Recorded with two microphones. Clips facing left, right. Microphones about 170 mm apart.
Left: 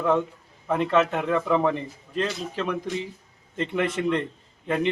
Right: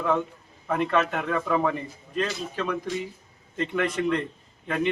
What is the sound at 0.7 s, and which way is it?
Speech, 25° left (ahead or behind).